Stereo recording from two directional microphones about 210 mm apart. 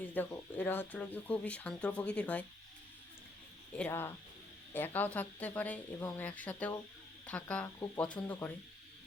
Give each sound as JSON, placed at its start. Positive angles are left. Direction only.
{"t": 0.0, "sound": "speech", "side_deg": 10}
{"t": 3.8, "sound": "speech", "side_deg": 10}
{"t": 7.8, "sound": "speech", "side_deg": 20}
{"t": 8.3, "sound": "speech", "side_deg": 10}